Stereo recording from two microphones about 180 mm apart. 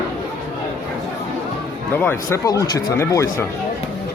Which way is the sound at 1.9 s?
10° left (ahead or behind).